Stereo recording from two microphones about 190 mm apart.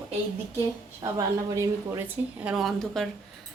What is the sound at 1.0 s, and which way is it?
A woman's voice, 15° right (ahead or behind).